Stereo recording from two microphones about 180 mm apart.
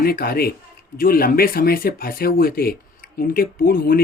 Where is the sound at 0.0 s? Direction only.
55° left (ahead or behind).